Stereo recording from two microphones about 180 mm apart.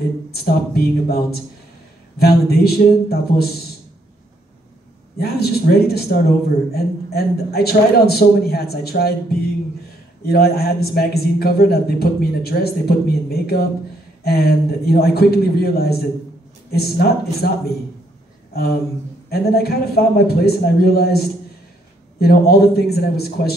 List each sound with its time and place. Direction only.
0.3 s a man's voice: 60° left (ahead or behind)
5.2 s a man's voice: 60° left (ahead or behind)
10.2 s a man's voice: 60° left (ahead or behind)
19.2 s a man's voice: 60° left (ahead or behind)